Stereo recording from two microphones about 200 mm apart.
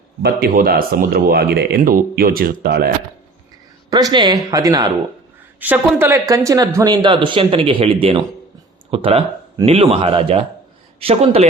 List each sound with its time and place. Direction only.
0.2 s speech: 50° right (ahead or behind)
3.8 s a man's voice: 20° right (ahead or behind)